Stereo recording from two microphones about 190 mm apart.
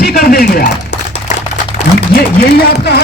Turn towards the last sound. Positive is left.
turn(degrees=55)  # may be behind; listen again after turning